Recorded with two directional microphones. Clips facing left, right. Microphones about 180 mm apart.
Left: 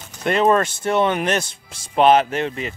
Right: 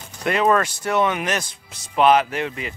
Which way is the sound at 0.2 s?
25° left (ahead or behind).